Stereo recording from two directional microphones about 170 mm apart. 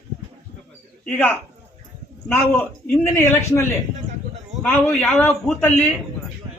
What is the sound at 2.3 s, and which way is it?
Speech, 15° left (ahead or behind).